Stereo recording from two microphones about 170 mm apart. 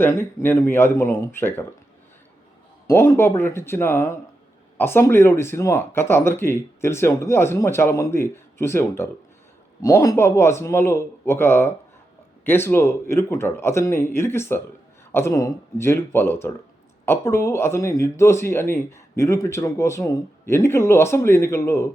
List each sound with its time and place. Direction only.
0.0 s speech: 15° left (ahead or behind)
2.8 s speech: 15° left (ahead or behind)